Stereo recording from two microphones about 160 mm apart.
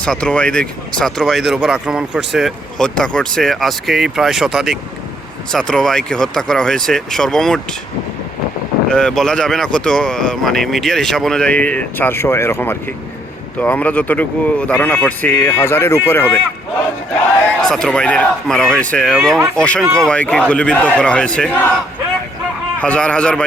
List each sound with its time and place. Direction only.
0.0 s speech: 5° left (ahead or behind)
8.9 s speech: 5° left (ahead or behind)
17.8 s speech: 5° left (ahead or behind)
19.8 s speech: 20° right (ahead or behind)
20.1 s speech: 5° left (ahead or behind)
22.8 s speech: 5° left (ahead or behind)